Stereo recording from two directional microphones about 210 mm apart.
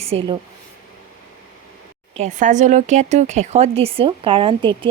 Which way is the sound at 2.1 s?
35° right (ahead or behind).